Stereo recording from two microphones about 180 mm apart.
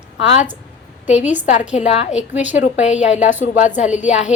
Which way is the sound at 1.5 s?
40° left (ahead or behind).